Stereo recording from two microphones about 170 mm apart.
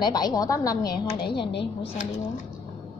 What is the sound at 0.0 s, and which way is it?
A woman's voice, 25° left (ahead or behind).